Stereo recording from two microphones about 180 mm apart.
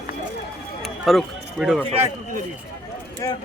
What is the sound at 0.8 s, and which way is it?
Speech, centre (ahead or behind).